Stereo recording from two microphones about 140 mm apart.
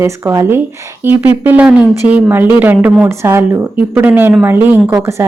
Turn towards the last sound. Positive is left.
turn(degrees=-20)  # may be behind; listen again after turning